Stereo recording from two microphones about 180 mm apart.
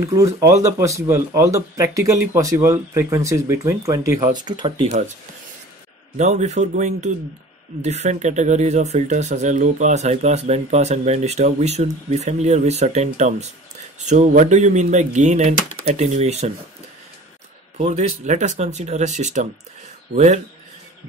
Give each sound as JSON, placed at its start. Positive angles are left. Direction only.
{"t": 0.1, "sound": "speech", "side_deg": -15}
{"t": 6.1, "sound": "speech", "side_deg": -40}
{"t": 17.7, "sound": "speech", "side_deg": -35}